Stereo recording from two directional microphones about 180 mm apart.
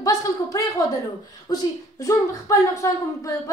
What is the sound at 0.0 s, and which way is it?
A woman's voice, 20° left (ahead or behind).